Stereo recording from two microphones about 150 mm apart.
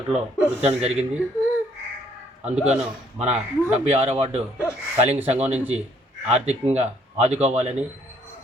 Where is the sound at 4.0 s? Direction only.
40° right (ahead or behind).